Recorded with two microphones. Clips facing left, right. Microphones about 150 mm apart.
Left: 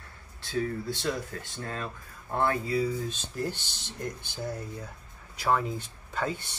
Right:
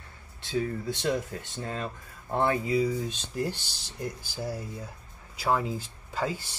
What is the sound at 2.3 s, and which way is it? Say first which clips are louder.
Speech: right 2 dB; 20° right (ahead or behind).